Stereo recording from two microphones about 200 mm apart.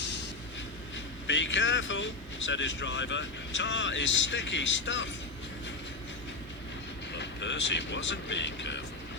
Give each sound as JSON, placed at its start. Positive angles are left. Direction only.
{"t": 0.9, "sound": "speech", "side_deg": 65}
{"t": 7.1, "sound": "speech", "side_deg": 60}